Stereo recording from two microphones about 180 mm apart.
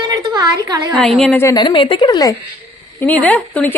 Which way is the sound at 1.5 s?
25° left (ahead or behind).